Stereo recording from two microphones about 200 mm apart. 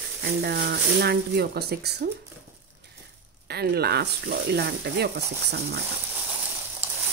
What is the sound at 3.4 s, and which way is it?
Speech, 55° right (ahead or behind).